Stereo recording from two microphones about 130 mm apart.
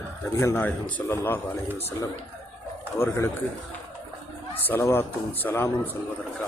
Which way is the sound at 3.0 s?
20° left (ahead or behind).